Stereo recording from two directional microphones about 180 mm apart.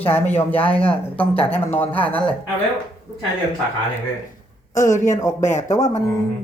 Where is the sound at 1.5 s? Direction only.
10° left (ahead or behind).